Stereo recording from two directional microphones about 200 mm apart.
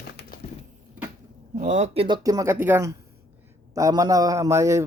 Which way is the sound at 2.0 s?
20° right (ahead or behind).